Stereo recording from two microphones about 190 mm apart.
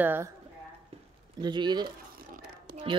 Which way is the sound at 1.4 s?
25° right (ahead or behind).